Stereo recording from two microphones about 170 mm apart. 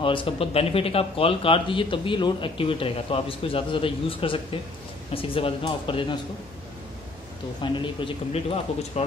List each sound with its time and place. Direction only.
0.0 s speech: 30° left (ahead or behind)
7.6 s speech: 30° left (ahead or behind)